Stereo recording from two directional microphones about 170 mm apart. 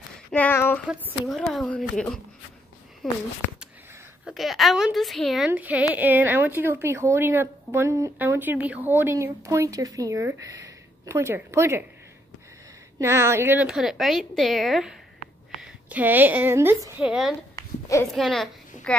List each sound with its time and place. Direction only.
0.3 s a sound: 10° left (ahead or behind)
0.8 s a woman's voice: 10° right (ahead or behind)
13.0 s a woman's voice: 15° right (ahead or behind)
17.0 s a woman's voice: 5° right (ahead or behind)
17.6 s a sound: 20° left (ahead or behind)
18.1 s a woman's voice: centre (ahead or behind)